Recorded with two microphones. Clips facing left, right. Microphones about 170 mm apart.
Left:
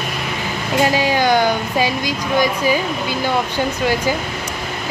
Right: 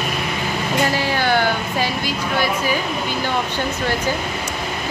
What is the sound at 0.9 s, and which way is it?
Speech, 15° left (ahead or behind).